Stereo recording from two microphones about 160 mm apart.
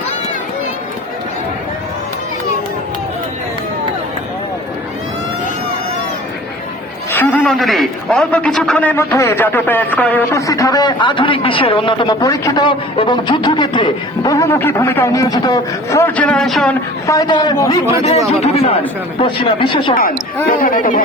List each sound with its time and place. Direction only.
7.1 s a sound: 15° left (ahead or behind)
7.4 s a man's voice: centre (ahead or behind); by 14.3 s 30° left (ahead or behind)
14.3 s a man's voice: 15° left (ahead or behind)
17.1 s a man's voice: 25° left (ahead or behind)
18.3 s speech: 40° left (ahead or behind)
20.5 s speech: 60° left (ahead or behind)